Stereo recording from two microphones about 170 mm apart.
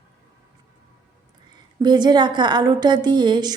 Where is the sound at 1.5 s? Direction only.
25° right (ahead or behind).